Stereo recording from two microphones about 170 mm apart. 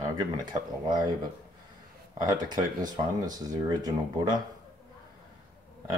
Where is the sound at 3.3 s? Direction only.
25° right (ahead or behind).